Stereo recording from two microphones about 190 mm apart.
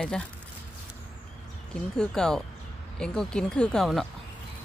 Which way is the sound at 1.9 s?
5° left (ahead or behind).